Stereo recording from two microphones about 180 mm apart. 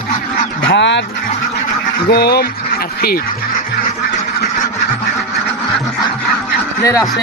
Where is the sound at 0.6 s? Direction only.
85° left.